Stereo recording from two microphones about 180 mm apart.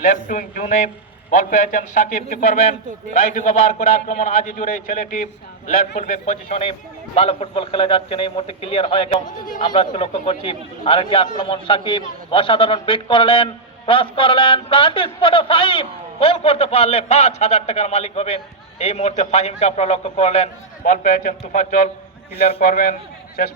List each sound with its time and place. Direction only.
0.1 s a man's voice: 50° left (ahead or behind)
20.8 s a man's voice: 50° left (ahead or behind)